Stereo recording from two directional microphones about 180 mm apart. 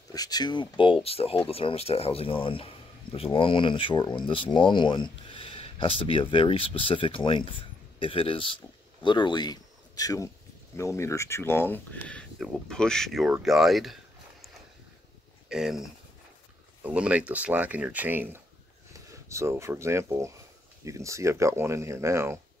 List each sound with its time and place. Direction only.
0.1 s speech: 20° left (ahead or behind); by 13.9 s centre (ahead or behind)
15.4 s speech: centre (ahead or behind)